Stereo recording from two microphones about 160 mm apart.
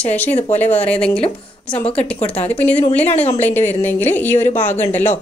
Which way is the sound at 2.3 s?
40° left (ahead or behind).